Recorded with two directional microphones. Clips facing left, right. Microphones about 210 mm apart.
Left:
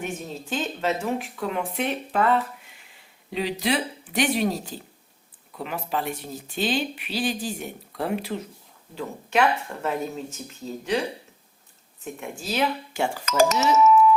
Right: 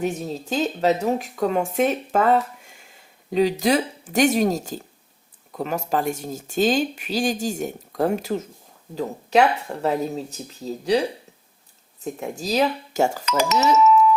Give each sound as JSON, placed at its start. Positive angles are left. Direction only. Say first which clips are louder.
{"t": 0.0, "sound": "speech", "louder": "right 6 dB", "side_deg": -35}
{"t": 12.0, "sound": "speech", "louder": "right 5 dB", "side_deg": -40}
{"t": 13.2, "sound": "speech", "louder": "left 2 dB", "side_deg": 45}